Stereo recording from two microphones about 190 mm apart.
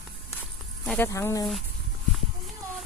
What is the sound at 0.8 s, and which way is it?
Speech, 10° left (ahead or behind).